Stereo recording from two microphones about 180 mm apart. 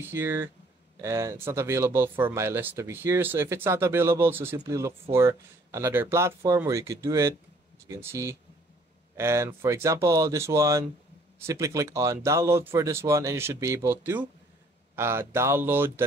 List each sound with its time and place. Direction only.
0.0 s speech: 10° right (ahead or behind)